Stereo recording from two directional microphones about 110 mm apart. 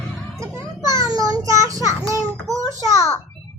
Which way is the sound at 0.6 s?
30° right (ahead or behind).